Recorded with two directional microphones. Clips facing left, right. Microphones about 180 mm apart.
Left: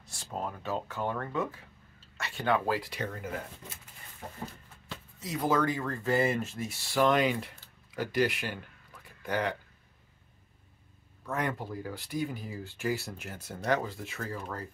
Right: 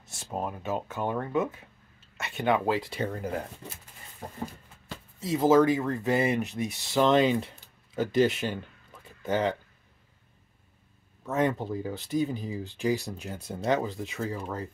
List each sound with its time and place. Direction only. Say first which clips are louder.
0.1 s speech: right 3 dB; 20° right (ahead or behind); by 3.7 s 35° right (ahead or behind)
4.2 s a sound: right 3 dB; 40° right (ahead or behind)
5.2 s speech: right 8 dB; 25° right (ahead or behind)
11.2 s speech: right 6 dB; 25° right (ahead or behind)